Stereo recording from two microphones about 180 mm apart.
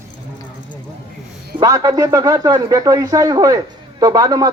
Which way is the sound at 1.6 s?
20° right (ahead or behind).